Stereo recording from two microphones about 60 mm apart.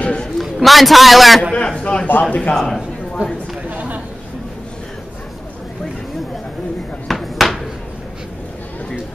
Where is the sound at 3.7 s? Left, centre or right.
Right.